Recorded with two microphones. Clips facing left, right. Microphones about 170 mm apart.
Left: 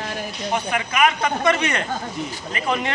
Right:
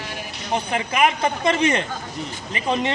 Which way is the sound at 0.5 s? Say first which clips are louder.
Right 1 dB; 30° right (ahead or behind).